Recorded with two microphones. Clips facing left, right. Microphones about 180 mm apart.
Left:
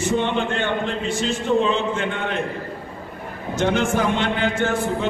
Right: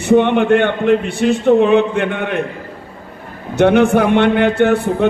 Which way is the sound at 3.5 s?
60° right (ahead or behind).